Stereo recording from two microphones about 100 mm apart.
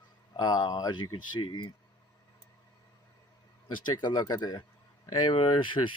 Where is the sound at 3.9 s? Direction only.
45° left (ahead or behind).